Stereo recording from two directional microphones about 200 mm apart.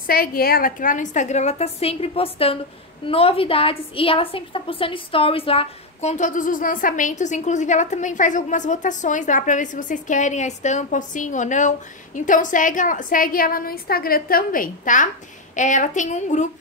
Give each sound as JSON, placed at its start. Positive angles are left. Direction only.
{"t": 0.0, "sound": "a woman's voice", "side_deg": 45}